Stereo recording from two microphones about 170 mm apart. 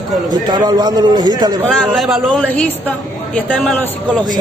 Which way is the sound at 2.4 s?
10° left (ahead or behind).